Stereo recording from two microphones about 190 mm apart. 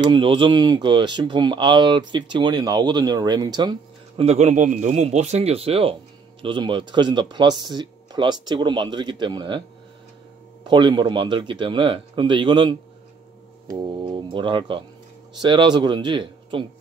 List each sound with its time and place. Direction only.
0.0 s speech: 25° right (ahead or behind)
4.2 s speech: 35° right (ahead or behind)
10.7 s speech: 25° right (ahead or behind)